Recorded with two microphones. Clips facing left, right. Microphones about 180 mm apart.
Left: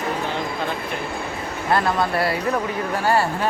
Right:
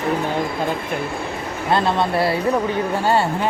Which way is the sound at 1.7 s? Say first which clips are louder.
Right 2 dB; 25° right (ahead or behind).